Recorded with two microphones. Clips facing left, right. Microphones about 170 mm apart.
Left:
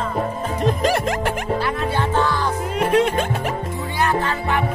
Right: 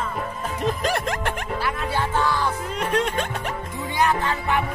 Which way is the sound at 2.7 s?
5° left (ahead or behind).